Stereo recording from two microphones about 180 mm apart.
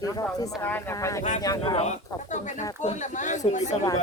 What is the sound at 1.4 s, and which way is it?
Speech, 30° left (ahead or behind).